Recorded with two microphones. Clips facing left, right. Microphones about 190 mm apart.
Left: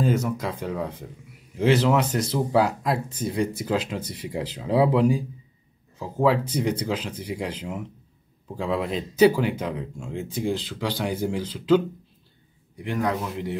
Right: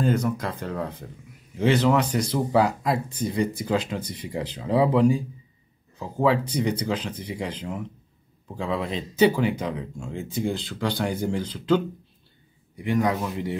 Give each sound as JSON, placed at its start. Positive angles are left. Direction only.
{"t": 0.0, "sound": "speech", "side_deg": 5}